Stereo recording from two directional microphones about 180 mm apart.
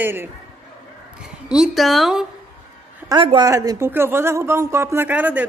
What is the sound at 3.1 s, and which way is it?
A man's voice, 25° right (ahead or behind).